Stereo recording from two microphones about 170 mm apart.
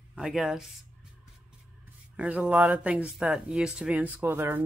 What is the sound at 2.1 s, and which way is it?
Speech, 10° right (ahead or behind).